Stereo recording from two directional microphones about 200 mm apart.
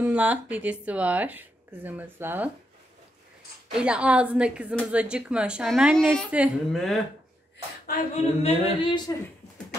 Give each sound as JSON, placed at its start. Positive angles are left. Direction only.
{"t": 0.0, "sound": "speech", "side_deg": -5}
{"t": 3.7, "sound": "a woman's voice", "side_deg": -5}
{"t": 7.8, "sound": "speech", "side_deg": 45}
{"t": 8.4, "sound": "singing", "side_deg": 30}